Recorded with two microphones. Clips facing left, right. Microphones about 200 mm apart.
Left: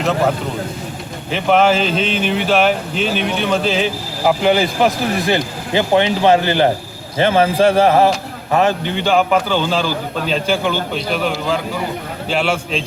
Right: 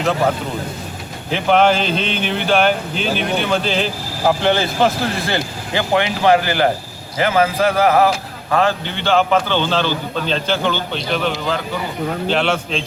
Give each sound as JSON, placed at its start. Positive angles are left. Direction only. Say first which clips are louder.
{"t": 1.3, "sound": "a man's voice", "louder": "left 1 dB", "side_deg": 0}
{"t": 8.5, "sound": "a man's voice", "louder": "left 2 dB", "side_deg": 15}